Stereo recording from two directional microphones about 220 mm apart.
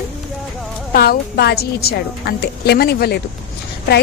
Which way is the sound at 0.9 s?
45° left (ahead or behind).